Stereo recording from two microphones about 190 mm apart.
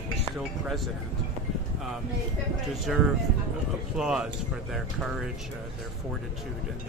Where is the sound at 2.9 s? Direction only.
Centre (ahead or behind).